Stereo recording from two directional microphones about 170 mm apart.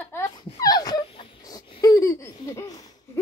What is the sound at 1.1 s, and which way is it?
Laughter, 25° left (ahead or behind).